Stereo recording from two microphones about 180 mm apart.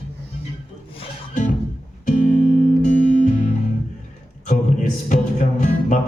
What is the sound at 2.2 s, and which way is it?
Music, 45° left (ahead or behind).